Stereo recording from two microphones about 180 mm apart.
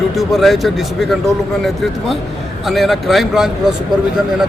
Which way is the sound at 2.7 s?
Centre (ahead or behind).